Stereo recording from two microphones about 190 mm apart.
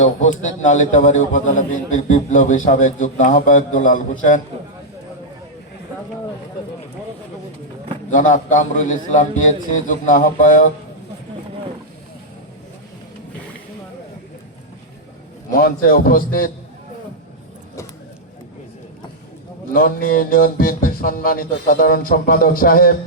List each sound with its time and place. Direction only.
0.0 s a man's voice: 40° left (ahead or behind)
8.1 s music: 45° left (ahead or behind)
15.5 s music: 50° left (ahead or behind)
19.7 s music: 50° left (ahead or behind)